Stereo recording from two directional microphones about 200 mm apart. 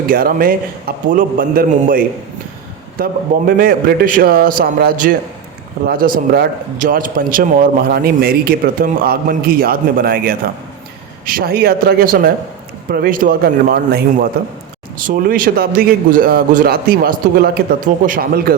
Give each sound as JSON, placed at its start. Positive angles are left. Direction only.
{"t": 0.1, "sound": "a man's voice", "side_deg": -45}